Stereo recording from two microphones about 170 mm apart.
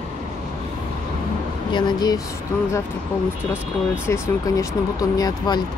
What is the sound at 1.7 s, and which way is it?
Speech, 25° left (ahead or behind).